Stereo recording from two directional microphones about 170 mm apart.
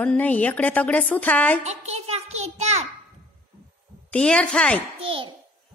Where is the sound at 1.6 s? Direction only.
40° right (ahead or behind).